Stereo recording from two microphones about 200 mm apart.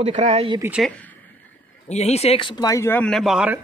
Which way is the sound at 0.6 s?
5° right (ahead or behind).